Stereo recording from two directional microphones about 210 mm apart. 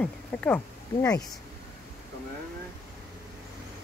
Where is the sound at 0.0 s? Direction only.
5° left (ahead or behind).